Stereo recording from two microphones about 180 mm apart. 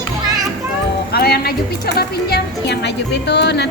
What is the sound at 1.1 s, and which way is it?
A woman's voice, 60° left (ahead or behind).